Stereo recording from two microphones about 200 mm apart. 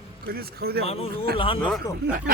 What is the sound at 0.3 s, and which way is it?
Speech, 50° right (ahead or behind).